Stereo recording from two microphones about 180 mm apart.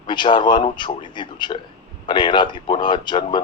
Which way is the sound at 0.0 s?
25° left (ahead or behind).